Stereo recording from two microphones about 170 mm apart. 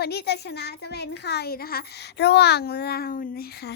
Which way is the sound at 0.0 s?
70° left (ahead or behind).